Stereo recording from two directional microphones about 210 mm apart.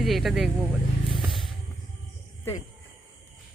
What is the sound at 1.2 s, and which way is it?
Vehicle, centre (ahead or behind).